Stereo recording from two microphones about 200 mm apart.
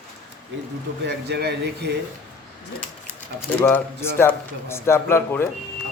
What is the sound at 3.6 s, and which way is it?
A man's voice, 10° left (ahead or behind).